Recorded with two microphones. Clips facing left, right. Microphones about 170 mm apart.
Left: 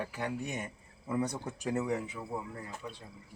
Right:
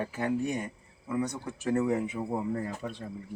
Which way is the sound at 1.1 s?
30° left (ahead or behind).